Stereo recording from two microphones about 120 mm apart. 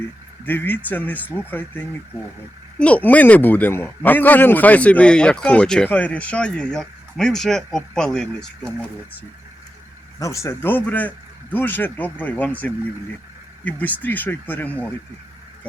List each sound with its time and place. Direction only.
0.4 s a man's voice: 15° left (ahead or behind)
10.2 s a man's voice: 25° left (ahead or behind)